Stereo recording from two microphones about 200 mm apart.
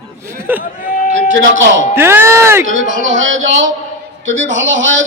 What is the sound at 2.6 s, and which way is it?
Speech, 70° right (ahead or behind).